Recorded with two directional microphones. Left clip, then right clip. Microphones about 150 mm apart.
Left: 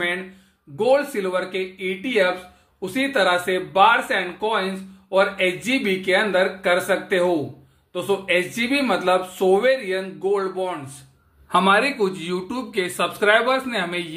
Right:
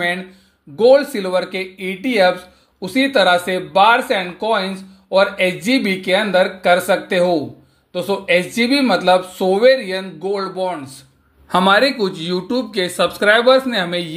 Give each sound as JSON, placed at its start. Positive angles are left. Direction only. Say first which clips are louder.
{"t": 0.7, "sound": "speech", "louder": "right 7 dB", "side_deg": -25}
{"t": 11.5, "sound": "speech", "louder": "right 4 dB", "side_deg": -35}